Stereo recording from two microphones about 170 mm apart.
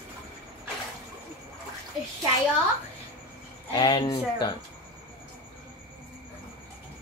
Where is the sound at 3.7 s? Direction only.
25° left (ahead or behind).